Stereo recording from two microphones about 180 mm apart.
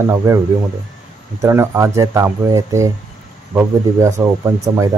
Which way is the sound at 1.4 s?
15° right (ahead or behind).